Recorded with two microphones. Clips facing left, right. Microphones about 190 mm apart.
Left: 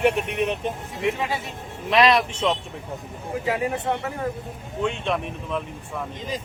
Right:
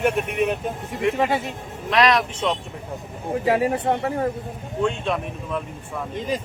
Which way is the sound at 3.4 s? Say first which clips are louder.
Right 5 dB; 30° right (ahead or behind).